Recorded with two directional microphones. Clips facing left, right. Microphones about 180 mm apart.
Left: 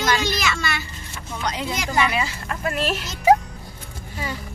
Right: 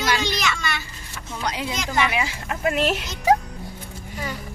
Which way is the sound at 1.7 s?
10° left (ahead or behind).